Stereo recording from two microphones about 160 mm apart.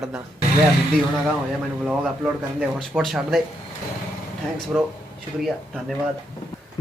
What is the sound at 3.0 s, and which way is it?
Speech, centre (ahead or behind).